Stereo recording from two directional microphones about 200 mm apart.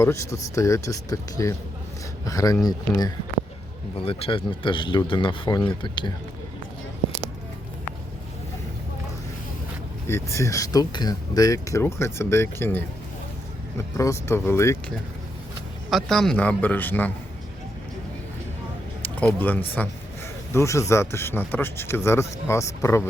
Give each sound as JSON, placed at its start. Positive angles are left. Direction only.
{"t": 0.0, "sound": "speech", "side_deg": 15}
{"t": 10.1, "sound": "speech", "side_deg": 15}
{"t": 15.9, "sound": "speech", "side_deg": 0}
{"t": 19.0, "sound": "speech", "side_deg": 10}